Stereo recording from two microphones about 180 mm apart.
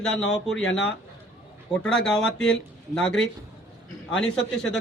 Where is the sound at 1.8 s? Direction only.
5° left (ahead or behind).